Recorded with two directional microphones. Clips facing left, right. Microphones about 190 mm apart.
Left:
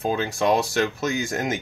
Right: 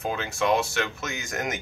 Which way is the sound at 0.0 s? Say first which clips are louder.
Left 4 dB; 35° left (ahead or behind).